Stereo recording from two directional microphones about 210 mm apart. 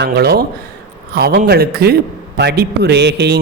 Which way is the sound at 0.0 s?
50° right (ahead or behind).